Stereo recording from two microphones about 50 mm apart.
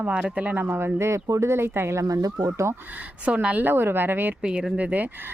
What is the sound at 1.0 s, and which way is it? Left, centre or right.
Speech, right.